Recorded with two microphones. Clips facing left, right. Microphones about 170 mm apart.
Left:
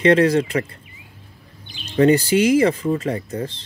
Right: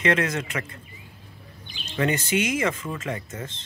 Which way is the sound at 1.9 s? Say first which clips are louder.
Left 9 dB; 35° left (ahead or behind).